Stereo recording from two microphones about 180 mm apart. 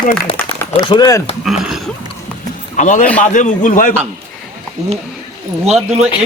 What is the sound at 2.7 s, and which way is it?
Speech, 45° left (ahead or behind).